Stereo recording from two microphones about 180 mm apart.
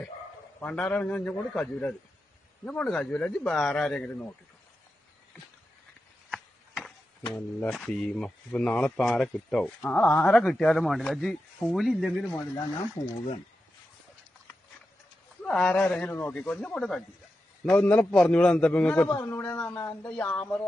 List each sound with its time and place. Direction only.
0.6 s a man's voice: 10° left (ahead or behind)
6.3 s a sound: 5° left (ahead or behind)
7.6 s speech: 5° left (ahead or behind)
12.3 s speech: 20° left (ahead or behind)
15.4 s a man's voice: 5° left (ahead or behind)